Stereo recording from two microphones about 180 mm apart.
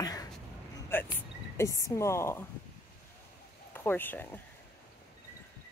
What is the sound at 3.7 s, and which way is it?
Speech, 10° left (ahead or behind).